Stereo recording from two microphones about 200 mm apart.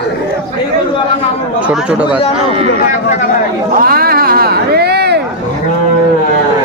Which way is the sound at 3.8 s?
45° right (ahead or behind).